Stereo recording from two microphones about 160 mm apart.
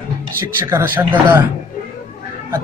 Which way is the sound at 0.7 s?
15° right (ahead or behind).